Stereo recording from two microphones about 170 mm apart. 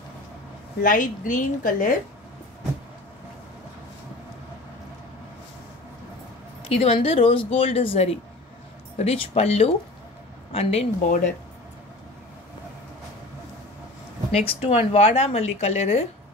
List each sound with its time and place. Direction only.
0.8 s a woman's voice: 50° left (ahead or behind)
6.7 s speech: 35° left (ahead or behind)
11.0 s a woman's voice: 50° left (ahead or behind)
14.3 s speech: 35° left (ahead or behind)